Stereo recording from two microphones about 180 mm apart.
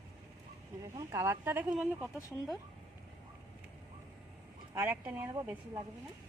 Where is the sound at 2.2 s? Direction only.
20° left (ahead or behind).